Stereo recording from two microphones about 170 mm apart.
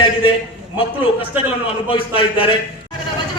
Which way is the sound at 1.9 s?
30° left (ahead or behind).